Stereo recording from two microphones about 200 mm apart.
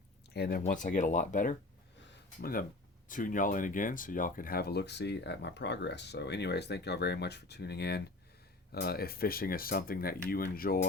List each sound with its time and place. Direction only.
0.3 s speech: 50° left (ahead or behind)
0.6 s speech: 40° left (ahead or behind)
2.0 s a sound: 45° left (ahead or behind)
3.1 s speech: 40° left (ahead or behind)